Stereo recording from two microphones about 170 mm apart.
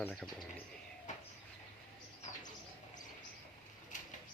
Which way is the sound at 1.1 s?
45° left (ahead or behind).